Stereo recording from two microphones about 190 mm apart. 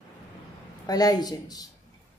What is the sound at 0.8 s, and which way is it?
Speech, 20° left (ahead or behind).